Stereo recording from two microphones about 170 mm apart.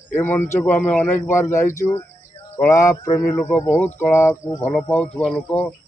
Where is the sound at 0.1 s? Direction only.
10° left (ahead or behind).